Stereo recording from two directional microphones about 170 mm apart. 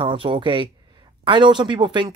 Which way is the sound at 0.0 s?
30° right (ahead or behind).